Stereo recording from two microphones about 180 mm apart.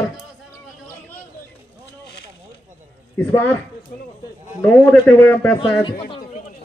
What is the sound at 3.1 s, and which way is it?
Speech, 15° left (ahead or behind).